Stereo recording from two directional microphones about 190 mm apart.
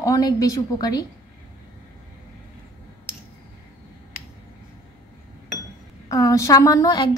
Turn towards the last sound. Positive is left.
turn(degrees=20)  # may be behind; listen again after turning